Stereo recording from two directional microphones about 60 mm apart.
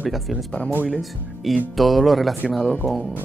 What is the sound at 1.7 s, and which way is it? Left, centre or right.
Speech, centre.